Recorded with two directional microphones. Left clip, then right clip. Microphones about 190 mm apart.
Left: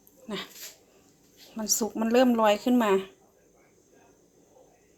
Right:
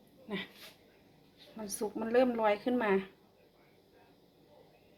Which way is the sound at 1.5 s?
25° left (ahead or behind).